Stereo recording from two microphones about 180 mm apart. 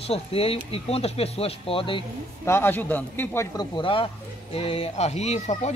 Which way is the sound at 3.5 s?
25° left (ahead or behind).